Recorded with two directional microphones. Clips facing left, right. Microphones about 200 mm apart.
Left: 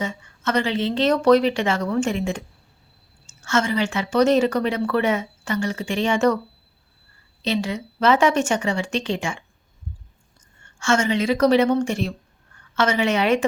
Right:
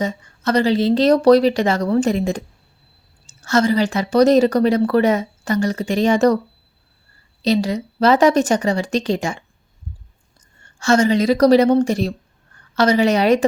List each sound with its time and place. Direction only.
0.0 s a woman's voice: 35° right (ahead or behind)
7.4 s a woman's voice: 40° right (ahead or behind)
10.8 s a woman's voice: 35° right (ahead or behind)